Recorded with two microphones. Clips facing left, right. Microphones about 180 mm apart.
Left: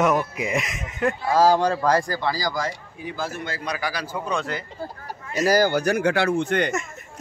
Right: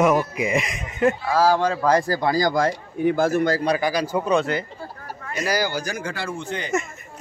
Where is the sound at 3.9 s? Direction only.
15° right (ahead or behind).